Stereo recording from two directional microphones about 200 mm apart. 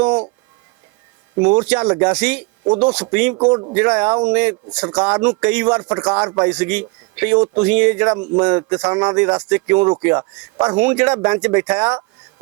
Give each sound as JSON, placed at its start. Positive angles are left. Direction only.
{"t": 0.0, "sound": "a sound", "side_deg": -5}
{"t": 1.4, "sound": "speech", "side_deg": -5}
{"t": 3.3, "sound": "speech", "side_deg": -20}
{"t": 3.8, "sound": "speech", "side_deg": -5}